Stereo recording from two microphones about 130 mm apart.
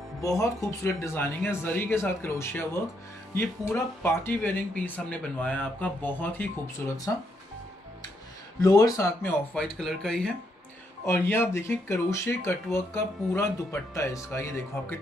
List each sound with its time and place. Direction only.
0.2 s speech: 25° left (ahead or behind)
8.5 s speech: 25° left (ahead or behind); by 10.3 s 5° left (ahead or behind)
11.1 s speech: 20° left (ahead or behind)